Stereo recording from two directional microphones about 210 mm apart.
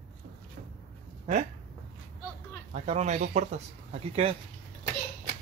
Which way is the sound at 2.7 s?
30° right (ahead or behind).